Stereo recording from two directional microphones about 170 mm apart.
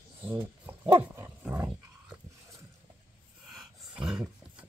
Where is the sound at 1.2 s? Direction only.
15° right (ahead or behind).